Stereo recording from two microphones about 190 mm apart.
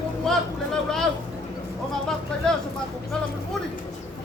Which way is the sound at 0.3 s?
Centre (ahead or behind).